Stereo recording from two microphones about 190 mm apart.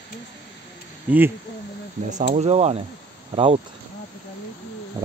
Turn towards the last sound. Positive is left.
turn(degrees=-20)  # may be behind; listen again after turning